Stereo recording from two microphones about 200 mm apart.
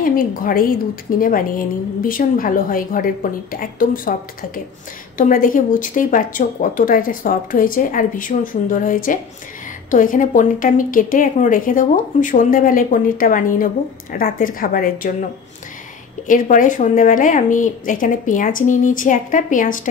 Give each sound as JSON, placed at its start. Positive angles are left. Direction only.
{"t": 0.0, "sound": "a woman's voice", "side_deg": 45}
{"t": 16.3, "sound": "speech", "side_deg": 40}